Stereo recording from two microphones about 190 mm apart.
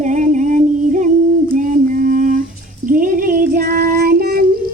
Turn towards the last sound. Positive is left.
turn(degrees=-55)  # may be behind; listen again after turning